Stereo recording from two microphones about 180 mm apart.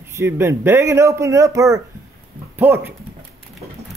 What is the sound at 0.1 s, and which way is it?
A man's voice, 15° right (ahead or behind).